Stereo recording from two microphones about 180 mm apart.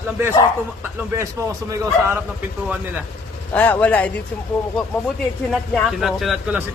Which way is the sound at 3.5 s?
10° left (ahead or behind).